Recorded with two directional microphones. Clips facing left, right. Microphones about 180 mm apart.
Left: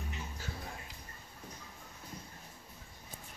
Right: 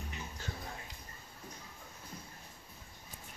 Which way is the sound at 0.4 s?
5° left (ahead or behind).